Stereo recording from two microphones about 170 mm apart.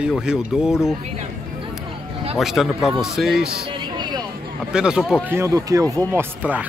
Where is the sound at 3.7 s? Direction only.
25° right (ahead or behind).